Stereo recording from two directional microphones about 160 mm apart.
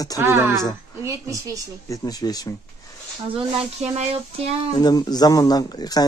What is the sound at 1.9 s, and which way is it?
Speech, 25° left (ahead or behind).